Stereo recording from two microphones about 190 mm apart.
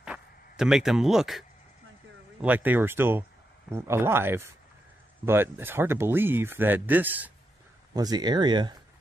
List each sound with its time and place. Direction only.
0.0 s a sound: 5° right (ahead or behind)
2.4 s speech: 10° right (ahead or behind)
7.9 s speech: 20° right (ahead or behind)